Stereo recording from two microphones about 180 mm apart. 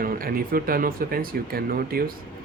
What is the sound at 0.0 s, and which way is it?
Speech, 55° right (ahead or behind).